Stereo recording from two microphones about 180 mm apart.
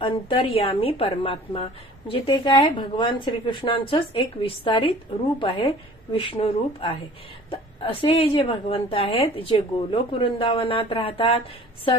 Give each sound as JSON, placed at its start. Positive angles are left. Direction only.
{"t": 0.0, "sound": "a woman's voice", "side_deg": 30}